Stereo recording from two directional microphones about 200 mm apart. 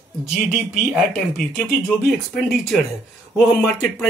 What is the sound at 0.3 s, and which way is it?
Speech, centre (ahead or behind).